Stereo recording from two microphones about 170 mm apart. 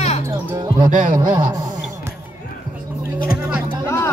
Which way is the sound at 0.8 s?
50° right (ahead or behind).